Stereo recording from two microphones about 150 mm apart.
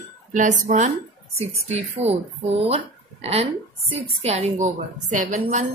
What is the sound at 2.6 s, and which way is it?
A woman's voice, 45° right (ahead or behind).